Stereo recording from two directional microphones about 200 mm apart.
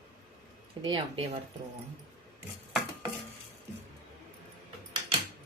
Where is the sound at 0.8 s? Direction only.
25° right (ahead or behind).